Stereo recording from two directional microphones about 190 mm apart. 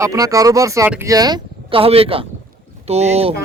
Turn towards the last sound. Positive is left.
turn(degrees=-35)  # may be behind; listen again after turning